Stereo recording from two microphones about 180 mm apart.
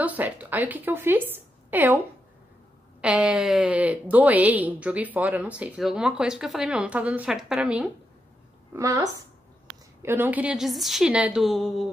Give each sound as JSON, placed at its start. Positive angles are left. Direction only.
{"t": 0.0, "sound": "a woman's voice", "side_deg": -10}
{"t": 3.0, "sound": "speech", "side_deg": -5}
{"t": 8.7, "sound": "a woman's voice", "side_deg": -20}